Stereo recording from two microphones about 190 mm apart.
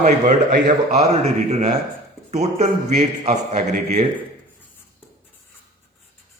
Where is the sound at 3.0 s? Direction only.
35° right (ahead or behind).